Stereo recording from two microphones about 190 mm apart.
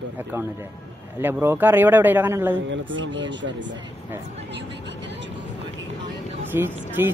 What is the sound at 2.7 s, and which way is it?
Speech, 75° right (ahead or behind).